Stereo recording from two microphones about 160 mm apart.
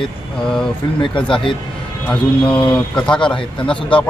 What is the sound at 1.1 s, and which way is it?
Speech, 30° left (ahead or behind).